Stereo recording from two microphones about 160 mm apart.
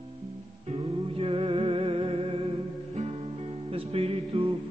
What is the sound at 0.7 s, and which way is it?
Music, 35° right (ahead or behind).